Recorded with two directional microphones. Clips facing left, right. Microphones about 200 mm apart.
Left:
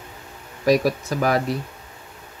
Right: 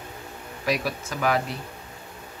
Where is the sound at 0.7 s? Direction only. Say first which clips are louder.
Left 9 dB; 40° left (ahead or behind).